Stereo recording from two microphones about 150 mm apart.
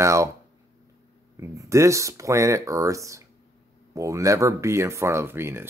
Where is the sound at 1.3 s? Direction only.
20° right (ahead or behind).